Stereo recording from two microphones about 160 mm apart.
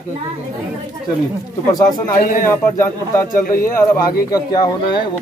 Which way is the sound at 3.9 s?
25° left (ahead or behind).